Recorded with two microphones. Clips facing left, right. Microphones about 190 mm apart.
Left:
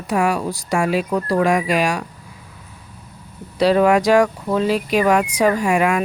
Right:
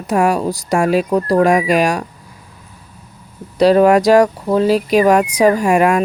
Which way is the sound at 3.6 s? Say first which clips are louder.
Right 4 dB; 40° right (ahead or behind).